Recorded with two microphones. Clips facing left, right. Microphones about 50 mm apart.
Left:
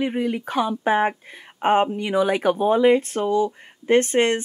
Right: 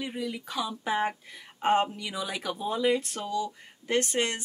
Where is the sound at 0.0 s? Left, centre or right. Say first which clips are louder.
Left 10 dB; left.